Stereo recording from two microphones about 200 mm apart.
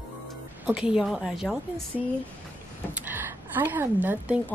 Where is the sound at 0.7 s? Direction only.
5° right (ahead or behind).